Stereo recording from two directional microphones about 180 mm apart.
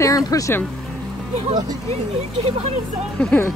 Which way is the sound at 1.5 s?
25° right (ahead or behind).